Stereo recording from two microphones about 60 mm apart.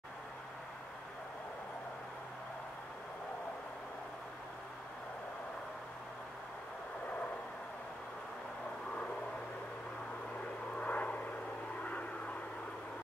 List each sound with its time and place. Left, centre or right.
10.8 s vehicle: left